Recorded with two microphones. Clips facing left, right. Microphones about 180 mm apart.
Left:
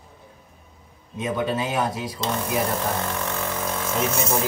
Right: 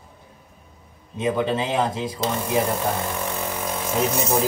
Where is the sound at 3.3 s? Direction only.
15° right (ahead or behind).